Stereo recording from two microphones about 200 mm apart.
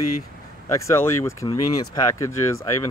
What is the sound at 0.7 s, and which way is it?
Speech, 15° left (ahead or behind).